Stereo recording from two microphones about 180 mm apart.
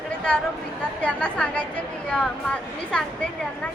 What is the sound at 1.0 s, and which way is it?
A woman's voice, 5° left (ahead or behind).